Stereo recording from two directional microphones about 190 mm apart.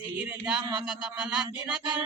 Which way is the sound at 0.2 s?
5° right (ahead or behind).